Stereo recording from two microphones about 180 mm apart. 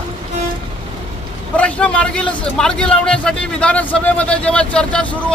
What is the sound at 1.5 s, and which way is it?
A man's voice, 5° left (ahead or behind).